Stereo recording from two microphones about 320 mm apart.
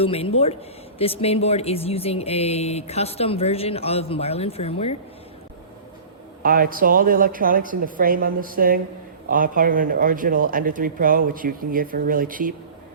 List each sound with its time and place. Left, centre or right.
0.0 s speech: centre
6.4 s speech: right